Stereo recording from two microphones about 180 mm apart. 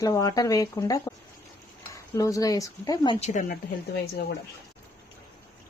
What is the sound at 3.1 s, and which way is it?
Speech, 40° left (ahead or behind).